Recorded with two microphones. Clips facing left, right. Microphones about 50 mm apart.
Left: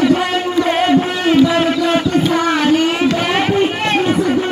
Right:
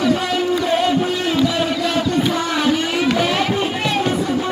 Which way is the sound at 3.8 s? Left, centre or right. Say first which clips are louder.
Left 4 dB; left.